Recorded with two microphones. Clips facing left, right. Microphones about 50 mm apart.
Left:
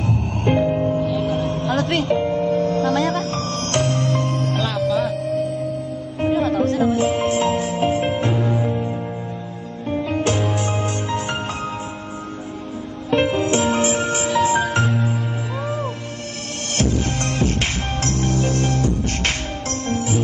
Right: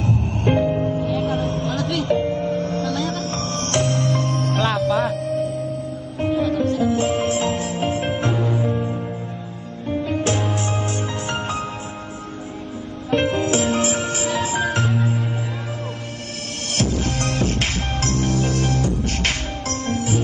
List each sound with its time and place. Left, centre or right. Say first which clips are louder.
0.5 s music: left 1 dB; centre
1.7 s music: left 3 dB; left
2.0 s music: left 1 dB; centre
2.8 s music: left 5 dB; left
3.3 s music: left 1 dB; centre
4.6 s music: right 3 dB; right
6.3 s music: left 1 dB; left
7.0 s music: left 2 dB; centre
10.0 s music: left 1 dB; centre
13.1 s music: left 1 dB; centre
16.7 s music: left 1 dB; centre